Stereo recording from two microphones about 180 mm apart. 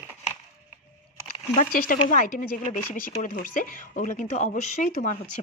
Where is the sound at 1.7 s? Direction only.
50° left (ahead or behind).